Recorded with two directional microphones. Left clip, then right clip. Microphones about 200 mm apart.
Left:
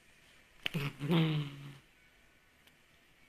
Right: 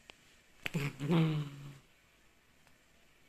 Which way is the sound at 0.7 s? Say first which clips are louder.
Left 1 dB; 15° right (ahead or behind).